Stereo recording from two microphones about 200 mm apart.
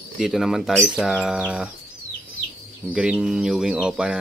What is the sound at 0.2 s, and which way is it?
Speech, centre (ahead or behind).